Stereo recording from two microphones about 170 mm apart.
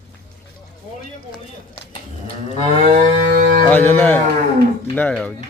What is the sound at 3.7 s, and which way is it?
Speech, 10° left (ahead or behind).